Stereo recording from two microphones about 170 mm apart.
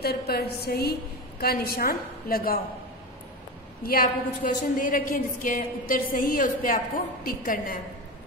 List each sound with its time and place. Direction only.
0.0 s a woman's voice: 65° left (ahead or behind)
3.8 s a woman's voice: 60° left (ahead or behind)